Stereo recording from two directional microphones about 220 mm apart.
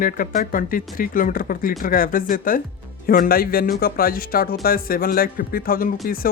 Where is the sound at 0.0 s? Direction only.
40° left (ahead or behind).